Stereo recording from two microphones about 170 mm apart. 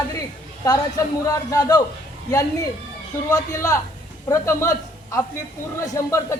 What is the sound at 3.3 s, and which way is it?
A man's voice, 20° left (ahead or behind).